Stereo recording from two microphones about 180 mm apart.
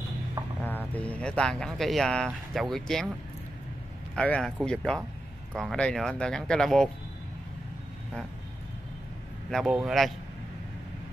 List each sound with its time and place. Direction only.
0.9 s speech: 10° left (ahead or behind)
4.1 s speech: 5° left (ahead or behind)
9.5 s speech: centre (ahead or behind)